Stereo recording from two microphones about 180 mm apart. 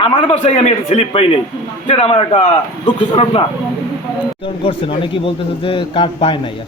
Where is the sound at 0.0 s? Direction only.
30° left (ahead or behind).